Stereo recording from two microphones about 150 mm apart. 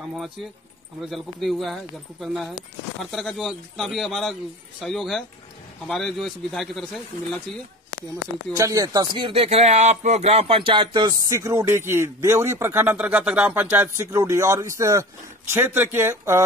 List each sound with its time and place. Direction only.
1.1 s a man's voice: centre (ahead or behind)
8.5 s speech: 20° right (ahead or behind)
9.2 s speech: 40° right (ahead or behind); by 16.4 s 15° right (ahead or behind)